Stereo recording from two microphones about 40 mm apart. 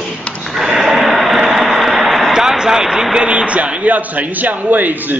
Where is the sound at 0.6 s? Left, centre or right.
Centre.